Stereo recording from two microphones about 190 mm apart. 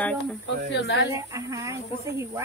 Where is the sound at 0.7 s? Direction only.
65° left (ahead or behind).